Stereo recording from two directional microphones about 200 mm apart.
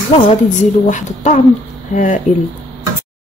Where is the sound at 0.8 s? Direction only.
40° left (ahead or behind).